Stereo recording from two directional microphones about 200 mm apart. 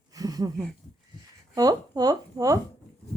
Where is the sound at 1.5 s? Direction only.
20° right (ahead or behind).